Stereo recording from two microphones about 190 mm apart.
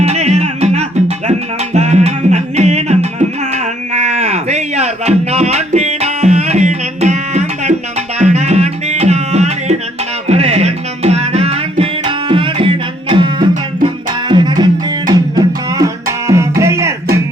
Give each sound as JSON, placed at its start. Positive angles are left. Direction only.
{"t": 0.0, "sound": "music", "side_deg": -35}